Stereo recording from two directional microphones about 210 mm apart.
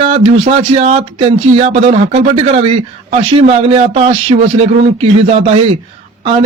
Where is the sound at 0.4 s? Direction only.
30° right (ahead or behind).